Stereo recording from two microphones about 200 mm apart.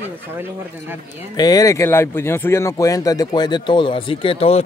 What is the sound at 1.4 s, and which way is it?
Speech, 20° left (ahead or behind).